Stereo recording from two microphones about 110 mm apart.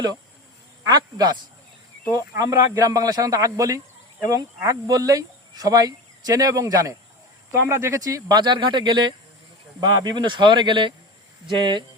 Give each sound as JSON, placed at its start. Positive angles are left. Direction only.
{"t": 0.9, "sound": "speech", "side_deg": -40}
{"t": 2.4, "sound": "speech", "side_deg": -35}